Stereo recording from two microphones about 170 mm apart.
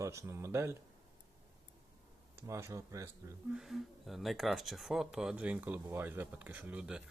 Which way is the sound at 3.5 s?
Centre (ahead or behind).